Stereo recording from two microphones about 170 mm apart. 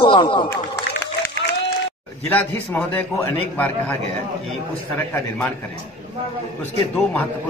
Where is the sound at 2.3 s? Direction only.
10° left (ahead or behind).